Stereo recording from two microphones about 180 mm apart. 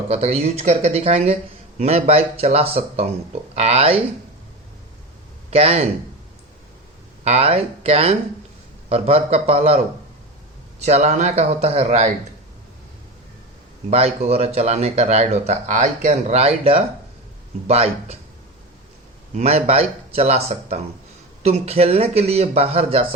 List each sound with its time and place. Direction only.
0.1 s speech: 35° right (ahead or behind)
5.5 s speech: 35° right (ahead or behind)
7.3 s speech: 35° right (ahead or behind)
13.9 s speech: 35° right (ahead or behind)
19.4 s speech: 35° right (ahead or behind)